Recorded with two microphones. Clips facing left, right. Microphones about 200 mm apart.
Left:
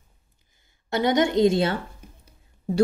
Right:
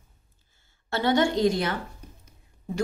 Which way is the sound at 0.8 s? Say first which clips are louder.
Left 2 dB; 20° left (ahead or behind).